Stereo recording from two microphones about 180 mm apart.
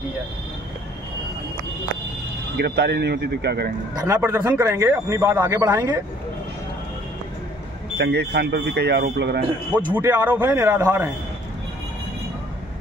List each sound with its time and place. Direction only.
2.5 s speech: 65° right (ahead or behind)
3.9 s a man's voice: 20° right (ahead or behind)
8.0 s speech: 65° right (ahead or behind)
9.9 s speech: 10° right (ahead or behind)